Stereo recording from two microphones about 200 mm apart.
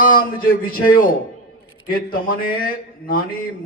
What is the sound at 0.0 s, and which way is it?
A man's voice, 45° left (ahead or behind).